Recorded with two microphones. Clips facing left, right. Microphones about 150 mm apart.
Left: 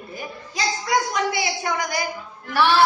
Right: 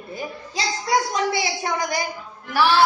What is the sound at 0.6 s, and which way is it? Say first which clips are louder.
Speech: left 1 dB; centre (ahead or behind).